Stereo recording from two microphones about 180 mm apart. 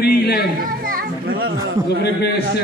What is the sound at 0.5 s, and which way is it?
Children playing, 50° right (ahead or behind).